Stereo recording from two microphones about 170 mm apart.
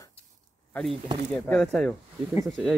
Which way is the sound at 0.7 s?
5° left (ahead or behind).